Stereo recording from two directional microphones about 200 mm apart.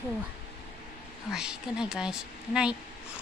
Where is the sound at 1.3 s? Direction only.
5° right (ahead or behind).